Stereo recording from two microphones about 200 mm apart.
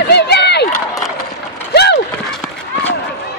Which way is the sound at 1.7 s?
55° left (ahead or behind).